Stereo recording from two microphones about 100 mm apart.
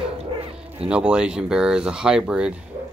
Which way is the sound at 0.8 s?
10° right (ahead or behind).